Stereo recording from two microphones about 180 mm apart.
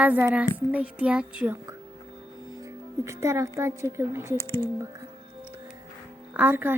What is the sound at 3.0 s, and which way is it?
Speech, 15° right (ahead or behind).